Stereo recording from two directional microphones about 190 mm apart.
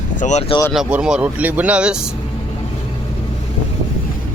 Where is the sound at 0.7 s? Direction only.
5° right (ahead or behind).